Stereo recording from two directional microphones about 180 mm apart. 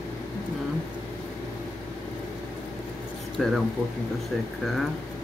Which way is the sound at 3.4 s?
Centre (ahead or behind).